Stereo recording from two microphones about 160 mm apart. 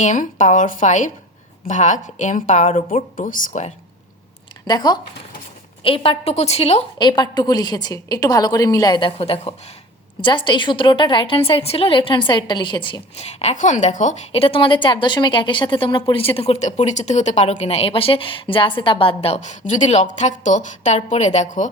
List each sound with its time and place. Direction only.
0.0 s speech: 50° left (ahead or behind)
4.6 s a woman's voice: 25° left (ahead or behind)
7.1 s a woman's voice: 25° left (ahead or behind); by 14.4 s 50° left (ahead or behind)
14.4 s a woman's voice: 35° left (ahead or behind); by 21.7 s 50° left (ahead or behind)